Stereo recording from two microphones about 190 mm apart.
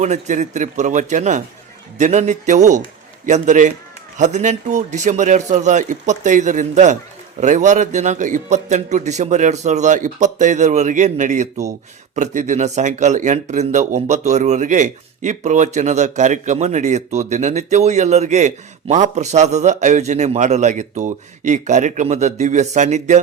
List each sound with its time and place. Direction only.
0.0 s speech: 40° right (ahead or behind)